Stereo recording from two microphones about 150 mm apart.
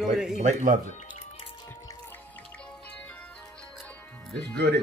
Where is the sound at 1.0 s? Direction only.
45° left (ahead or behind).